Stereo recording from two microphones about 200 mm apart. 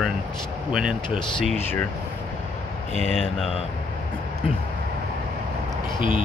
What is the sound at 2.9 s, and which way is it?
Speech, 35° right (ahead or behind).